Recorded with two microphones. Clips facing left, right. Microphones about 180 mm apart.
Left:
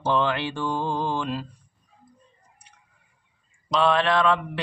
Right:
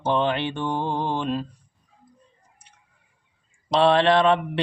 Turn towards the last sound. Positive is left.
turn(degrees=-25)  # may be behind; listen again after turning